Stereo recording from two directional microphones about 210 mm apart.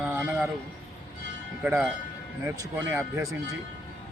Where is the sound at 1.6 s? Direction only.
5° right (ahead or behind).